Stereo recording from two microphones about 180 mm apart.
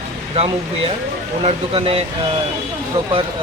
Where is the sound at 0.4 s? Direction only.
35° right (ahead or behind).